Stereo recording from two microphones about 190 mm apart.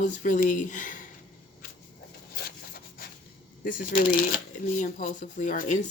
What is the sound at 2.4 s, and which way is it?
Wood, 50° left (ahead or behind).